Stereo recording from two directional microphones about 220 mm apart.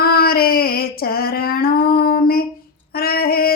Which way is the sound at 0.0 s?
45° left (ahead or behind).